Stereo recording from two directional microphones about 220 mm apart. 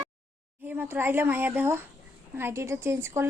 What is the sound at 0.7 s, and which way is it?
A woman's voice, 10° right (ahead or behind).